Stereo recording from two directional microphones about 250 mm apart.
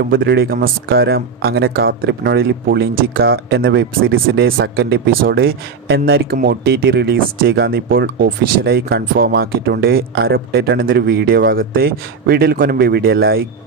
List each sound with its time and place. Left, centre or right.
0.1 s speech: right